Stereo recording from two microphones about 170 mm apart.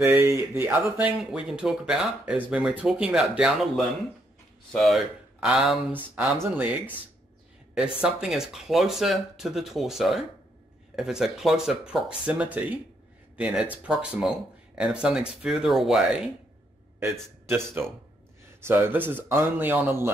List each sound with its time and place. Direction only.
0.0 s speech: 10° right (ahead or behind)
8.0 s speech: 5° right (ahead or behind)
17.0 s a man's voice: 15° right (ahead or behind)